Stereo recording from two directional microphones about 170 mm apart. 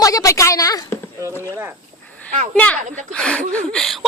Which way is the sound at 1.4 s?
10° right (ahead or behind).